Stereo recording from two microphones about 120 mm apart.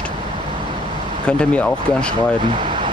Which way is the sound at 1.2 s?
10° left (ahead or behind).